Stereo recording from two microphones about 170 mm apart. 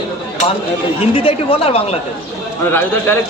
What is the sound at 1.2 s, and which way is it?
Speech, 35° left (ahead or behind).